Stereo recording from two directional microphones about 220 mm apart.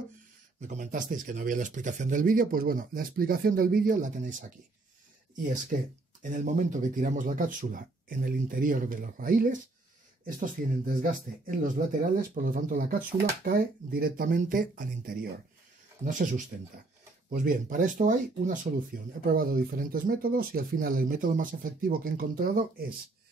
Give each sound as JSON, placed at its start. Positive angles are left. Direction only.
{"t": 0.6, "sound": "speech", "side_deg": -35}
{"t": 17.3, "sound": "speech", "side_deg": -35}